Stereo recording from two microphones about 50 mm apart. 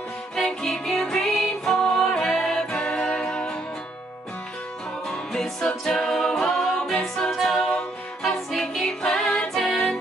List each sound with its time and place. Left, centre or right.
0.4 s music: centre
2.7 s music: left
5.0 s music: centre
7.4 s a capella: centre
8.2 s music: centre
9.5 s music: centre